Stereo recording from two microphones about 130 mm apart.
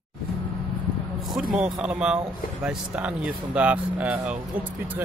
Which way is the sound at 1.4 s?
5° right (ahead or behind).